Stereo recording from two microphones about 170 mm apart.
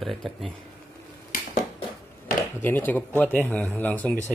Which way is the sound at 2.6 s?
10° left (ahead or behind).